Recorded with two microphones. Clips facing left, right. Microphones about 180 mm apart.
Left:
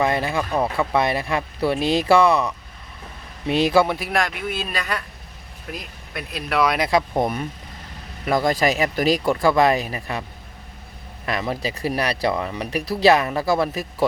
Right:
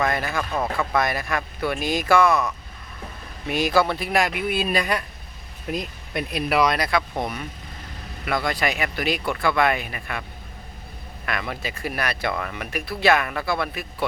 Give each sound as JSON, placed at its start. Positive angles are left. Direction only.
{"t": 0.0, "sound": "speech", "side_deg": 25}
{"t": 3.8, "sound": "speech", "side_deg": 10}
{"t": 4.1, "sound": "speech", "side_deg": -10}
{"t": 6.9, "sound": "speech", "side_deg": 40}
{"t": 11.3, "sound": "speech", "side_deg": 35}